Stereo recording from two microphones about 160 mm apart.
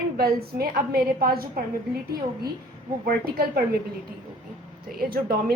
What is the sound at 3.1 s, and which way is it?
Speech, 70° right (ahead or behind).